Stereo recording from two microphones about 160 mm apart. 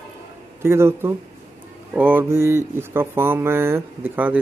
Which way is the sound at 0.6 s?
15° right (ahead or behind).